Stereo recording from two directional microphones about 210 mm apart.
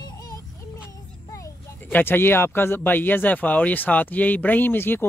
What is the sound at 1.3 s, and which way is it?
Speech, 10° left (ahead or behind).